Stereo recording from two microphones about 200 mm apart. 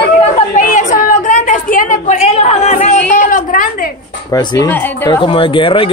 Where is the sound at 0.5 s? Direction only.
40° left (ahead or behind).